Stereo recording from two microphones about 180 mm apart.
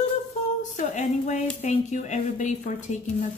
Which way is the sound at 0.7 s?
40° left (ahead or behind).